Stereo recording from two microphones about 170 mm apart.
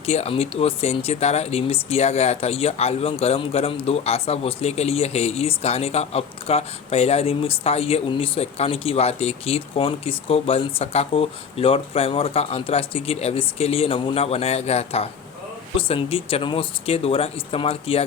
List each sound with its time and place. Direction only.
0.0 s speech: 35° left (ahead or behind)